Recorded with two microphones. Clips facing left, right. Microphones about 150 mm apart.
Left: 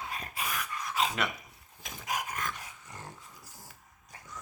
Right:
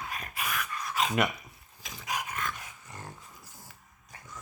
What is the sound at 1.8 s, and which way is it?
Dog, 50° left (ahead or behind).